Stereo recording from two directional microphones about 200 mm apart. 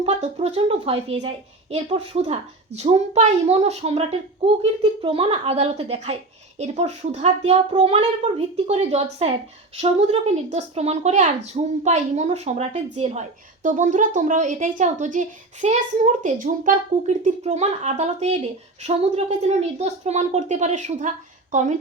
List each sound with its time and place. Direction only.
0.0 s a woman's voice: 30° right (ahead or behind)